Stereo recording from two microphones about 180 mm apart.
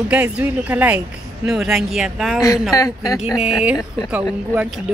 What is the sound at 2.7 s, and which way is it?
Speech, 20° left (ahead or behind).